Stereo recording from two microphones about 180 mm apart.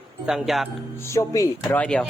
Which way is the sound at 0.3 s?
Centre (ahead or behind).